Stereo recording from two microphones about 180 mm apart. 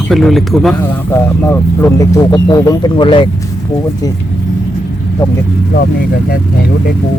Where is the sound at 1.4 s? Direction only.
15° left (ahead or behind).